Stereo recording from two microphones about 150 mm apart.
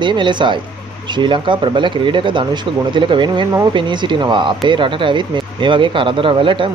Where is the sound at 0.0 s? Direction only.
30° right (ahead or behind).